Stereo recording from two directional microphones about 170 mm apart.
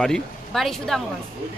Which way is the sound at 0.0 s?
5° left (ahead or behind).